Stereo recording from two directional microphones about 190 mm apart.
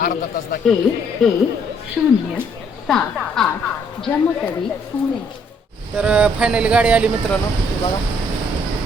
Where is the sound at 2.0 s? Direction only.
5° right (ahead or behind).